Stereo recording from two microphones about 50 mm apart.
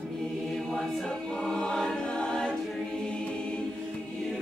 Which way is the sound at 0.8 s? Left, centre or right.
Centre.